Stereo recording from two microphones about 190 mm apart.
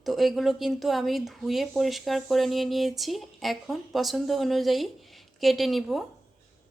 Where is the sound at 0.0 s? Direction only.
Centre (ahead or behind).